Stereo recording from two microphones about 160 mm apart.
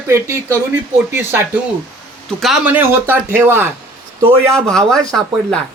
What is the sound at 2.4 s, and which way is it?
Speech, 5° right (ahead or behind).